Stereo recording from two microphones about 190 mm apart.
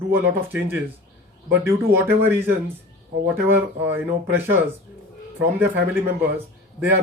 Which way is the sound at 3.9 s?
10° right (ahead or behind).